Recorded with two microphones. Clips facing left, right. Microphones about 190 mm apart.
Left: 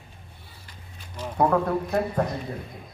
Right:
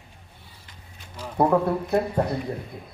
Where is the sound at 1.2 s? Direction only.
10° right (ahead or behind).